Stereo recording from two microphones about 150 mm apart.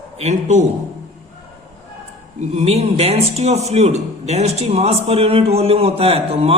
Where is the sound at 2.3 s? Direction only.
45° right (ahead or behind).